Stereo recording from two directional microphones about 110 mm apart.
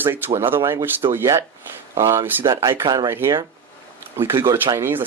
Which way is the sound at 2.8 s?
35° right (ahead or behind).